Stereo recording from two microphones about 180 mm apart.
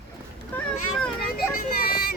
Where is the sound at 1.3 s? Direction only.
55° left (ahead or behind).